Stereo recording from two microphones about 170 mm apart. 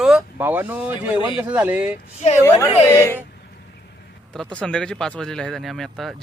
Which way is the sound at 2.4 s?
15° left (ahead or behind).